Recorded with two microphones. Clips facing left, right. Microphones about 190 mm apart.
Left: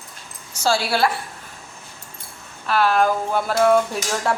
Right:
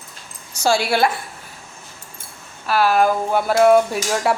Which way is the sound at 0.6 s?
15° right (ahead or behind).